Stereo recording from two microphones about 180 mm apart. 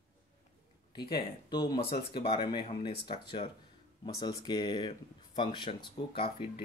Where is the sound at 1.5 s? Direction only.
25° left (ahead or behind).